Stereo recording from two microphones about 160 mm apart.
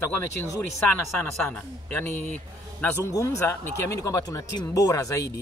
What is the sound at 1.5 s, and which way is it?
A man's voice, 10° left (ahead or behind).